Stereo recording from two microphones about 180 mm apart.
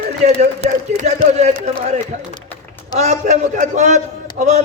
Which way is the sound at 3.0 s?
40° right (ahead or behind).